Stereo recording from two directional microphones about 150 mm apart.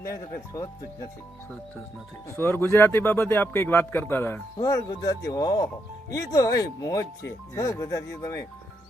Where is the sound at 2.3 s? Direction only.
15° left (ahead or behind).